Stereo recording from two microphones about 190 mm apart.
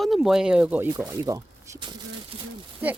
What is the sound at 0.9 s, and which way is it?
Speech, 15° right (ahead or behind).